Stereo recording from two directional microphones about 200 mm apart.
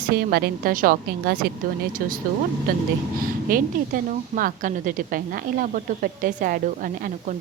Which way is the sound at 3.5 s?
45° right (ahead or behind).